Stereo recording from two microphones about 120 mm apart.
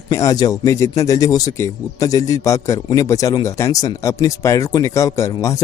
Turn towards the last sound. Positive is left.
turn(degrees=25)  # may be behind; listen again after turning